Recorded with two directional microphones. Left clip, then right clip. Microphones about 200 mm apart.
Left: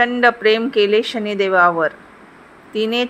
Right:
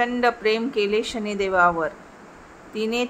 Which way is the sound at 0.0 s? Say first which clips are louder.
Left 7 dB; 15° left (ahead or behind).